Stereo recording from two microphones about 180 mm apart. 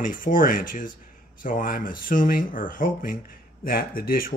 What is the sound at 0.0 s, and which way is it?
Speech, 50° left (ahead or behind).